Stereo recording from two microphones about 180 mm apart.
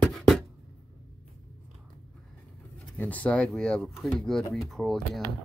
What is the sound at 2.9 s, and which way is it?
Speech, 10° left (ahead or behind).